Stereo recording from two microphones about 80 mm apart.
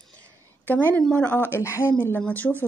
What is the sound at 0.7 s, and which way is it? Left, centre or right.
Speech, left.